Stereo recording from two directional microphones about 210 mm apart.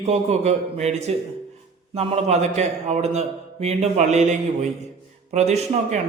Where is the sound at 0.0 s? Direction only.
30° right (ahead or behind).